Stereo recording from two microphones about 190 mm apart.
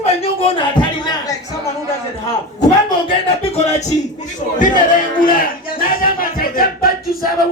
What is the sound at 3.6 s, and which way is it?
Music, 35° left (ahead or behind).